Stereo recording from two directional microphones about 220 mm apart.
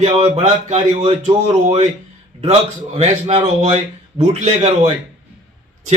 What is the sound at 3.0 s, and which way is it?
A man's voice, 30° right (ahead or behind).